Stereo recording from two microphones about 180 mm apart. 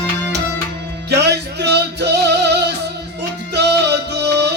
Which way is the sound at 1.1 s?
70° right (ahead or behind).